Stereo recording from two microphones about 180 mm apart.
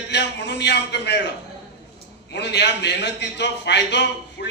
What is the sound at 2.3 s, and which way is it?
A man's voice, 70° left (ahead or behind).